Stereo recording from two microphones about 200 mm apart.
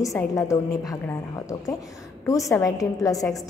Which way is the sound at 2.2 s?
15° left (ahead or behind).